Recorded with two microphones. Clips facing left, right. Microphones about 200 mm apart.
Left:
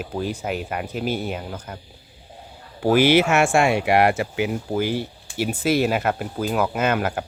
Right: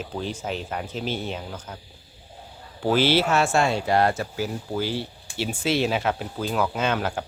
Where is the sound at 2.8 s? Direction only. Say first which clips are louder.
Left 4 dB; 15° left (ahead or behind).